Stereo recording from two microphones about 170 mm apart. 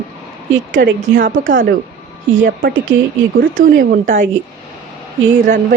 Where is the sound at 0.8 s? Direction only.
90° right.